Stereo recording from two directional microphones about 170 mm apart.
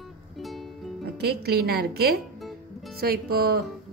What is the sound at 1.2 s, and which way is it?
A woman's voice, 70° right (ahead or behind).